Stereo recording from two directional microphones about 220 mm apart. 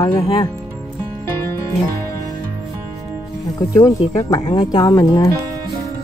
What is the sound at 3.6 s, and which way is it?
Speech, 15° left (ahead or behind).